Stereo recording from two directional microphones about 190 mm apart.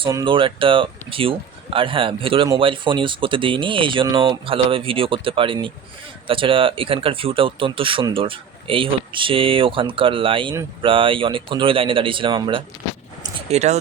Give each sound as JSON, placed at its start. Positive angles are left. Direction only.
{"t": 0.0, "sound": "speech", "side_deg": -20}